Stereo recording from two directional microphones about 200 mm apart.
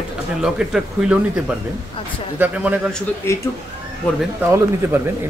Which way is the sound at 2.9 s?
15° left (ahead or behind).